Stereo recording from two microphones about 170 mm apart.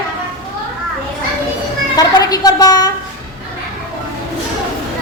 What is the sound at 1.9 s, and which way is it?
A woman's voice, 20° left (ahead or behind).